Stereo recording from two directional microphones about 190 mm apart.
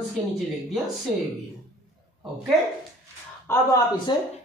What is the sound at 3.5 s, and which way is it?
Speech, 15° left (ahead or behind).